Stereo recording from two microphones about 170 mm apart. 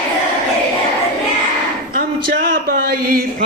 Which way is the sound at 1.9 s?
60° right (ahead or behind).